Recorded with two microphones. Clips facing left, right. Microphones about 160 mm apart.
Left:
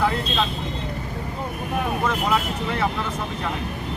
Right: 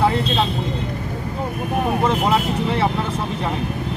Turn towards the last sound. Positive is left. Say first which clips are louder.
# right 4 dB
turn(degrees=-30)  # may be behind; listen again after turning